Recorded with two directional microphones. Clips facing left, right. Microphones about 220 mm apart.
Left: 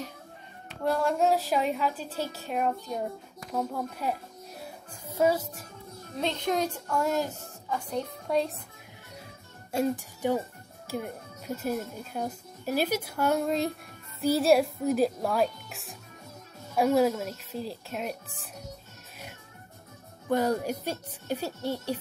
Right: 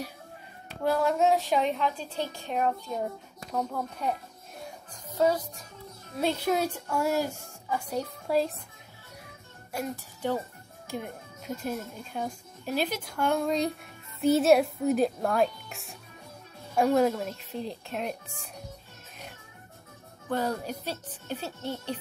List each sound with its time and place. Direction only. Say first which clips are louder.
0.8 s a child's voice: right 1 dB; centre (ahead or behind)
4.0 s a child's voice: even; 5° left (ahead or behind)
6.1 s a woman's voice: right 2 dB; 5° right (ahead or behind)
9.7 s a child's voice: left 7 dB; 25° left (ahead or behind)
10.9 s a child's voice: left 2 dB; 5° left (ahead or behind)
20.2 s speech: left 4 dB; 15° left (ahead or behind)